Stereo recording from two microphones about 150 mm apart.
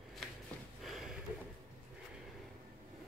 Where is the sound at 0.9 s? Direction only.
5° right (ahead or behind).